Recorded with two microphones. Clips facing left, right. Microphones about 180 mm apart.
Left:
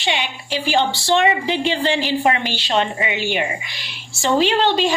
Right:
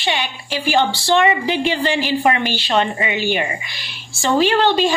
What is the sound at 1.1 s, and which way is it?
A woman's voice, 25° left (ahead or behind).